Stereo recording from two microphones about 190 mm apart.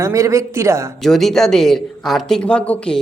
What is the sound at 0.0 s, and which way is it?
Speech, 15° right (ahead or behind).